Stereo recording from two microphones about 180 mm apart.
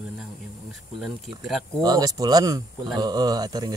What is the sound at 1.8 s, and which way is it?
Speech, 20° right (ahead or behind).